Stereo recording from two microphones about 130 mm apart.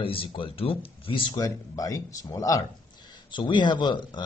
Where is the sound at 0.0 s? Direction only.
45° left (ahead or behind); by 2.6 s 25° left (ahead or behind).